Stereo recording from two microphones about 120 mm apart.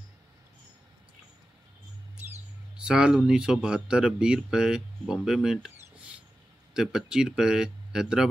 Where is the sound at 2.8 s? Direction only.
5° right (ahead or behind).